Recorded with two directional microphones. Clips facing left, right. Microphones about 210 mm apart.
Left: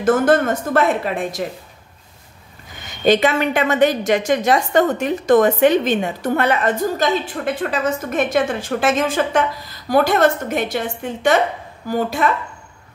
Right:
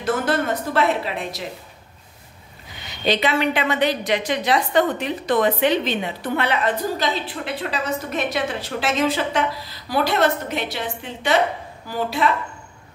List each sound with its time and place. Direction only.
0.0 s a woman's voice: 50° left (ahead or behind)
2.7 s a woman's voice: 45° left (ahead or behind)